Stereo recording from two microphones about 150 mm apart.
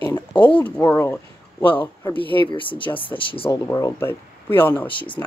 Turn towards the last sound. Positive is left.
turn(degrees=10)  # may be behind; listen again after turning